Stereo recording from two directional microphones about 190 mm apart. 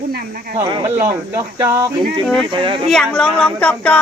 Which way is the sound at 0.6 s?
20° right (ahead or behind).